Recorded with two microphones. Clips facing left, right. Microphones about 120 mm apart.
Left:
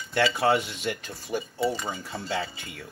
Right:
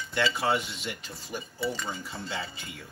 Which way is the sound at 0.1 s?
55° left (ahead or behind).